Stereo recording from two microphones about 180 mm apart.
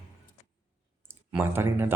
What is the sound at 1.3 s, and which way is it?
Speech, 10° right (ahead or behind).